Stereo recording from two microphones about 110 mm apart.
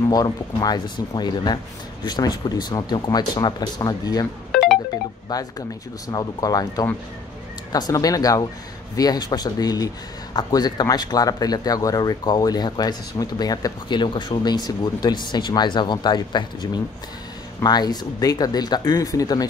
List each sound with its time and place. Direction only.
0.1 s speech: 35° left (ahead or behind)
4.5 s music: 5° left (ahead or behind)
5.3 s speech: 40° left (ahead or behind)